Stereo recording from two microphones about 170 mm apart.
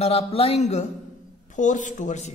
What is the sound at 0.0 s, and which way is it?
A man's voice, 35° left (ahead or behind).